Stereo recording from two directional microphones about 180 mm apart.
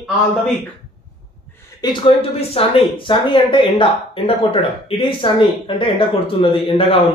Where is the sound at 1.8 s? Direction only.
30° left (ahead or behind).